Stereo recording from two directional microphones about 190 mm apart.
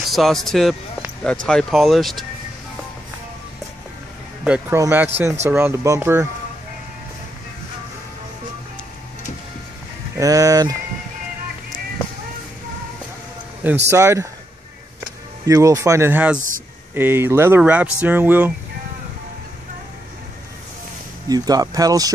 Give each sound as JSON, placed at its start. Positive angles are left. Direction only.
{"t": 0.1, "sound": "speech", "side_deg": 0}
{"t": 4.5, "sound": "speech", "side_deg": -15}
{"t": 10.1, "sound": "speech", "side_deg": -15}
{"t": 13.8, "sound": "speech", "side_deg": -15}
{"t": 15.4, "sound": "speech", "side_deg": -20}
{"t": 21.3, "sound": "speech", "side_deg": -20}